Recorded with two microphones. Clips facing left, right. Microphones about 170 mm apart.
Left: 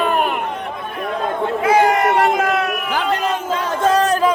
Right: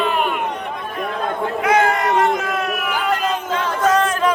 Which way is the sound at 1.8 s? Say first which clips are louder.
Left 2 dB; 45° left (ahead or behind).